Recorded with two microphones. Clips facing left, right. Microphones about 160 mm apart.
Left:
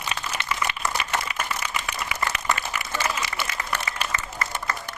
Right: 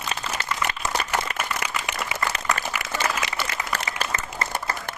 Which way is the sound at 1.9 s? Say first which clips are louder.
Right 1 dB; 25° right (ahead or behind).